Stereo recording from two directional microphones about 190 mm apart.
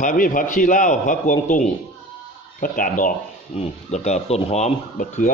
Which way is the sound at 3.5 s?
35° left (ahead or behind).